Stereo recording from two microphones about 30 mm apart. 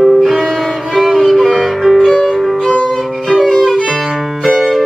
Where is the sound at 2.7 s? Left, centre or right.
Left.